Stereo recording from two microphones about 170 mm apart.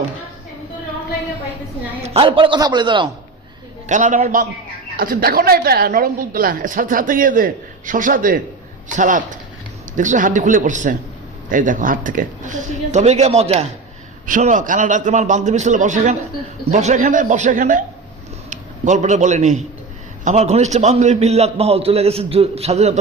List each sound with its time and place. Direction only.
2.0 s a man's voice: 35° right (ahead or behind)
3.8 s a woman's voice: 45° right (ahead or behind)
14.3 s a man's voice: 50° right (ahead or behind)